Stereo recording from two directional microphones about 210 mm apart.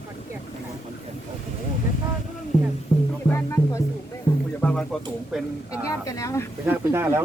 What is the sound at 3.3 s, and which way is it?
Speech, 15° left (ahead or behind).